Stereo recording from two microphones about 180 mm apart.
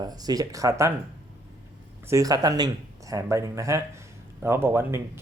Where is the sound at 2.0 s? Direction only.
20° right (ahead or behind).